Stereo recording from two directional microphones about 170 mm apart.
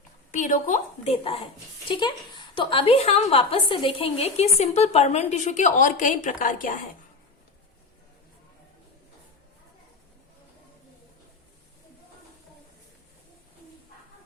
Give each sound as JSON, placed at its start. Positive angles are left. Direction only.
{"t": 0.3, "sound": "a woman's voice", "side_deg": 45}